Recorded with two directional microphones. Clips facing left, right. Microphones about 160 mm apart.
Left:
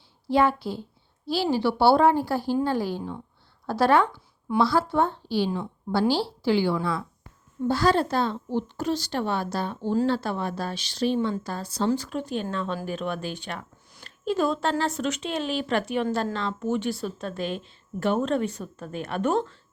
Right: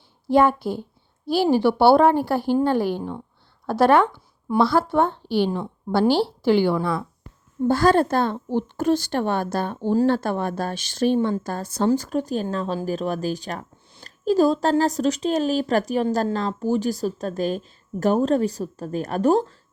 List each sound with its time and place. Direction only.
0.3 s a woman's voice: 50° right (ahead or behind)